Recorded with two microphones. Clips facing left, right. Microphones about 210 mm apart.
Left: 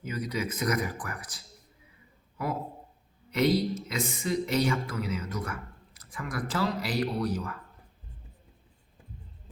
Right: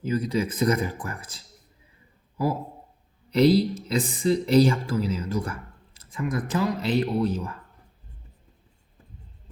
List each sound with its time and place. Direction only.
0.0 s speech: 30° right (ahead or behind)
3.3 s speech: 35° right (ahead or behind)